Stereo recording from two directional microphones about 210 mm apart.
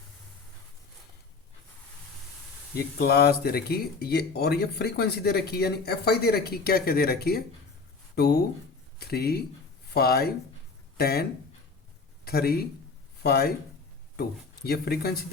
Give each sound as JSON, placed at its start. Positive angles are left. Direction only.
{"t": 2.7, "sound": "speech", "side_deg": 50}